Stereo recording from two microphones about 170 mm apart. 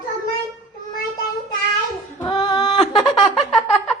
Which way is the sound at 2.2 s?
25° left (ahead or behind).